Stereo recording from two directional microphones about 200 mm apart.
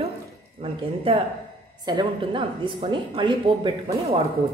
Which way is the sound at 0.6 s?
30° right (ahead or behind).